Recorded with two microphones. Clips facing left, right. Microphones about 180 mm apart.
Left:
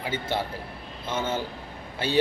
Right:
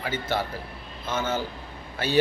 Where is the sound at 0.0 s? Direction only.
25° left (ahead or behind).